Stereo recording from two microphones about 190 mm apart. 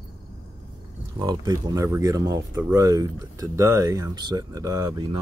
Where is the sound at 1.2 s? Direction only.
20° right (ahead or behind).